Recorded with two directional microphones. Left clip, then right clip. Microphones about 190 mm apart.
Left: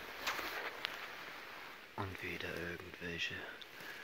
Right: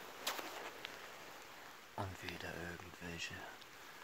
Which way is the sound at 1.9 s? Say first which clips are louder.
Left 3 dB; 15° right (ahead or behind).